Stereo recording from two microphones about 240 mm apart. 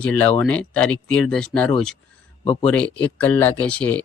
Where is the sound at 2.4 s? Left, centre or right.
Left.